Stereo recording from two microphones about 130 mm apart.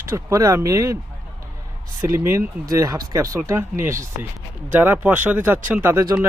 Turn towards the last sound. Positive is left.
turn(degrees=-20)  # may be behind; listen again after turning